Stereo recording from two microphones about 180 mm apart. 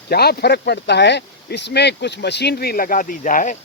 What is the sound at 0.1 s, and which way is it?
Speech, 60° left (ahead or behind).